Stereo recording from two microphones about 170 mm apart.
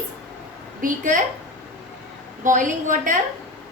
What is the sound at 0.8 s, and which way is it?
Speech, 50° right (ahead or behind).